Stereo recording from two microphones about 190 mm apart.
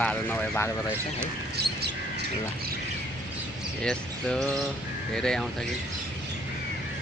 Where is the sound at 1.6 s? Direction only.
55° right (ahead or behind).